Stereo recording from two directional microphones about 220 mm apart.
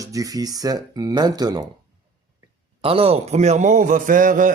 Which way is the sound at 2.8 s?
25° right (ahead or behind).